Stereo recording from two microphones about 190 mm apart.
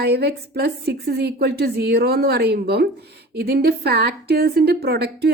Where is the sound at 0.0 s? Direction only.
60° right (ahead or behind).